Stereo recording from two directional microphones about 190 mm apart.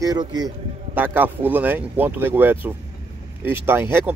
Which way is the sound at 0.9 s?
10° right (ahead or behind).